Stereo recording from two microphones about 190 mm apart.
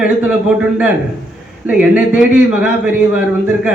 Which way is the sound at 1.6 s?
5° right (ahead or behind).